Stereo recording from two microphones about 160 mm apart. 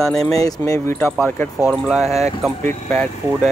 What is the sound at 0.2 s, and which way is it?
Speech, 20° left (ahead or behind).